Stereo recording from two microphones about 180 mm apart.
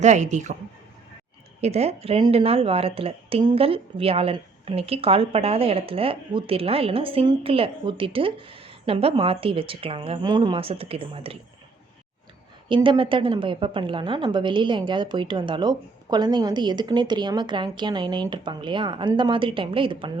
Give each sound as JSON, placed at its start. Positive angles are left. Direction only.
{"t": 0.0, "sound": "speech", "side_deg": -40}
{"t": 1.6, "sound": "speech", "side_deg": -35}
{"t": 12.6, "sound": "a woman's voice", "side_deg": -25}